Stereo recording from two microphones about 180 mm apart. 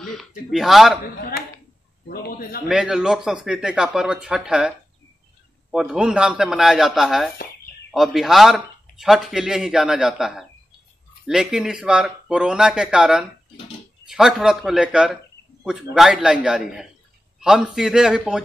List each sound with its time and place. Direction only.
0.0 s speech: centre (ahead or behind)
2.0 s a man's voice: 55° left (ahead or behind)
2.7 s speech: 5° right (ahead or behind)